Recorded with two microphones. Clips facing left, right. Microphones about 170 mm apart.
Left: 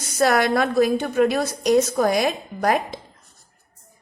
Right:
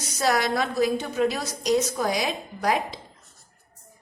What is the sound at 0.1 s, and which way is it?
A woman's voice, 55° left (ahead or behind).